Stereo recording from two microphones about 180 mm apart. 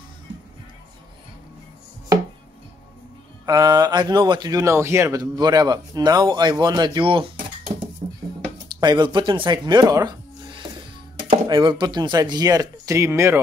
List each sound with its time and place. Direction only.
3.4 s a man's voice: 20° right (ahead or behind)
8.8 s speech: 25° right (ahead or behind)